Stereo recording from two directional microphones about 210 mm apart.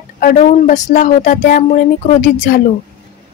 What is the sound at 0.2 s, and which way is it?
A woman's voice, 35° left (ahead or behind).